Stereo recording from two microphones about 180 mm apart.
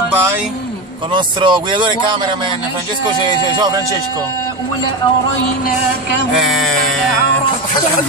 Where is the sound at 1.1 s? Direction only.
25° right (ahead or behind).